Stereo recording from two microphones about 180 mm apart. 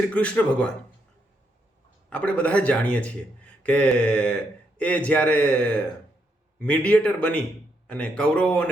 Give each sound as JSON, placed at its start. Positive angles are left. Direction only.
{"t": 0.1, "sound": "a man's voice", "side_deg": 5}
{"t": 2.0, "sound": "a man's voice", "side_deg": 5}